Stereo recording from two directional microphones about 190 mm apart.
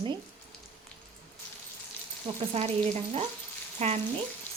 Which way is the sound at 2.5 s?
35° right (ahead or behind).